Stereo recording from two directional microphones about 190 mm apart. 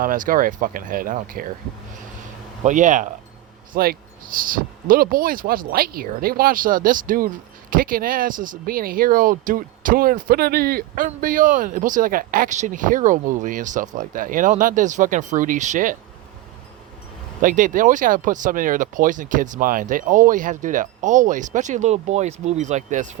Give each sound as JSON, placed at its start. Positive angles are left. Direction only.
{"t": 0.0, "sound": "speech", "side_deg": -45}
{"t": 2.6, "sound": "speech", "side_deg": -40}
{"t": 17.4, "sound": "speech", "side_deg": -45}